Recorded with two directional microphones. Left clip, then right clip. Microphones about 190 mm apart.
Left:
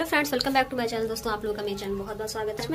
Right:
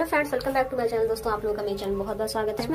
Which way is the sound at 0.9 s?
40° left (ahead or behind).